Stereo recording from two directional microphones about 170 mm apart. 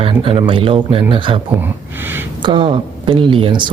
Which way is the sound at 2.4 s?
30° right (ahead or behind).